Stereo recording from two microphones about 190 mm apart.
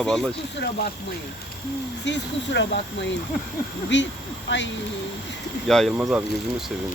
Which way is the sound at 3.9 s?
75° left (ahead or behind).